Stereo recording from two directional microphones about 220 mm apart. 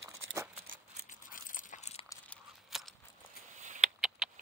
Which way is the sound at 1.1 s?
40° left (ahead or behind).